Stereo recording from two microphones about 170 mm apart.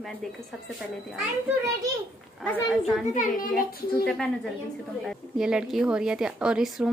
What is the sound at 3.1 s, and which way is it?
Speech, 50° left (ahead or behind).